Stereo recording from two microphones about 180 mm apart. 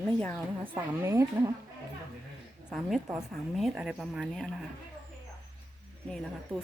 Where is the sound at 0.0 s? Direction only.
Centre (ahead or behind).